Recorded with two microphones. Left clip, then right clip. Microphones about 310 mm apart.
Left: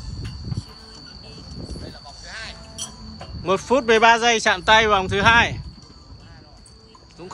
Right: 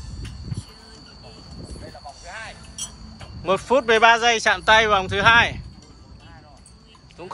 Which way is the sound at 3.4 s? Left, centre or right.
Centre.